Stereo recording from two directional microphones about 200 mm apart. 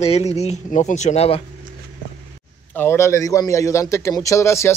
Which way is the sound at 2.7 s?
10° left (ahead or behind).